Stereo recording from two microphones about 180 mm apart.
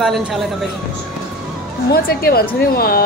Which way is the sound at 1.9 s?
55° left (ahead or behind).